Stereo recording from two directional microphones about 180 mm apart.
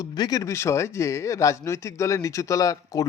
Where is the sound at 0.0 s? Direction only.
20° left (ahead or behind).